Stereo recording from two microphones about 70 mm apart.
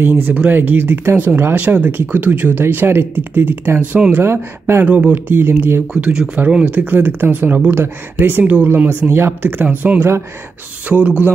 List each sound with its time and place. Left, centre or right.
0.0 s speech: right
4.8 s speech: right